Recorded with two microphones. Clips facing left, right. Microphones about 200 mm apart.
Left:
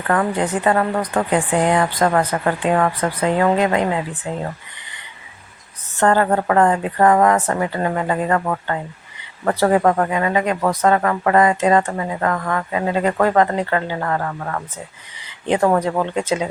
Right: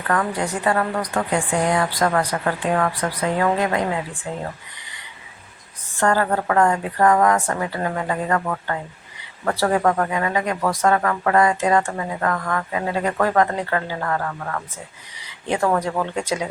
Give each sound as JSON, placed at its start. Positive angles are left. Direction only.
{"t": 0.3, "sound": "speech", "side_deg": 20}
{"t": 6.0, "sound": "speech", "side_deg": 20}
{"t": 9.7, "sound": "speech", "side_deg": 30}